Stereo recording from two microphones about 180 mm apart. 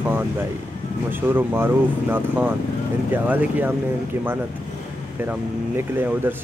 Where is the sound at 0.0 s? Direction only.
10° right (ahead or behind).